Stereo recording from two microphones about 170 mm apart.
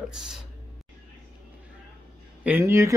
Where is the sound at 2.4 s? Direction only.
15° right (ahead or behind).